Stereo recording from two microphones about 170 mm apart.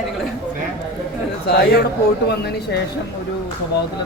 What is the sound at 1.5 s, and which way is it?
Speech, 70° left (ahead or behind).